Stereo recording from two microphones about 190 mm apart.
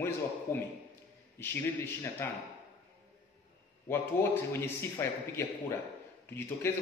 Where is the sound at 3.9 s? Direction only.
15° left (ahead or behind).